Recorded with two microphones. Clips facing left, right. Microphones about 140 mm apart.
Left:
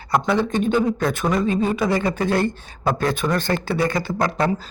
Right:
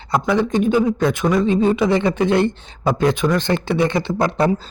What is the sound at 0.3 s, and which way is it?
Speech, 15° right (ahead or behind).